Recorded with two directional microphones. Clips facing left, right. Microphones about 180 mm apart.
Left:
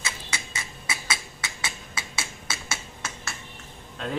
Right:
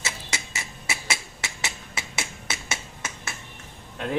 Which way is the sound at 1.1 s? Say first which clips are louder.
Right 1 dB; 25° right (ahead or behind).